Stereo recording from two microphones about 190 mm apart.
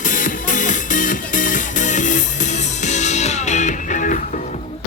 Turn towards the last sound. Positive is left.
turn(degrees=45)  # may be behind; listen again after turning